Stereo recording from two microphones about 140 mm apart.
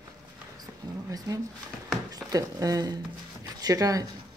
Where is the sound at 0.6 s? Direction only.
25° right (ahead or behind).